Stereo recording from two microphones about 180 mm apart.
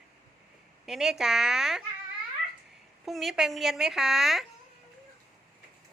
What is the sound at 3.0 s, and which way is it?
A woman's voice, centre (ahead or behind).